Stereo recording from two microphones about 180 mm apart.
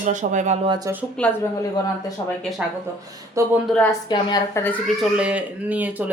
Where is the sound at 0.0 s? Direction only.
45° right (ahead or behind).